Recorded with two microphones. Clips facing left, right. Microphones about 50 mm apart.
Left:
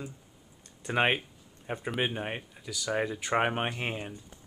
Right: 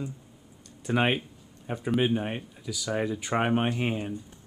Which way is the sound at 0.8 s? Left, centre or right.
Centre.